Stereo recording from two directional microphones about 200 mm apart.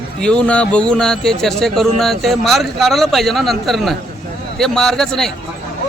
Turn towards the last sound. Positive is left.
turn(degrees=0)  # may be behind; listen again after turning